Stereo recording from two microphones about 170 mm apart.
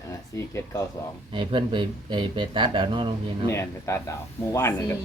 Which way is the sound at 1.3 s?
30° right (ahead or behind).